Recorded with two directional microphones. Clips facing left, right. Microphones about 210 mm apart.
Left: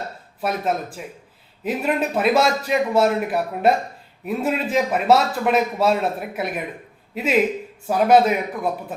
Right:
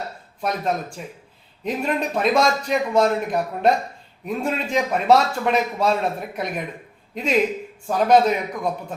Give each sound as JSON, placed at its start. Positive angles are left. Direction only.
{"t": 0.4, "sound": "a man's voice", "side_deg": 5}